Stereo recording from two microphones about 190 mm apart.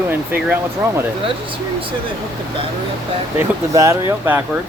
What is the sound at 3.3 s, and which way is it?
Speech, 15° right (ahead or behind).